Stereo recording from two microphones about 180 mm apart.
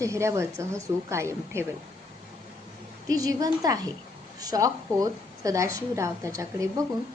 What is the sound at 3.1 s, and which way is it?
A woman's voice, 20° right (ahead or behind).